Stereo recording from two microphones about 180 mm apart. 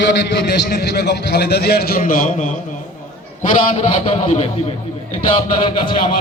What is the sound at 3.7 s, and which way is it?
Speech, 30° left (ahead or behind).